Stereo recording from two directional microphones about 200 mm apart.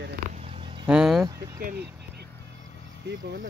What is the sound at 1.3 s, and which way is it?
Speech, 20° right (ahead or behind).